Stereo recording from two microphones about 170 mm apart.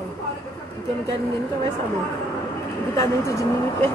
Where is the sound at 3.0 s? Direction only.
15° left (ahead or behind).